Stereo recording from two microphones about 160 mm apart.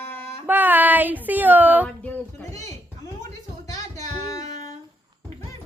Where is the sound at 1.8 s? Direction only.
10° left (ahead or behind).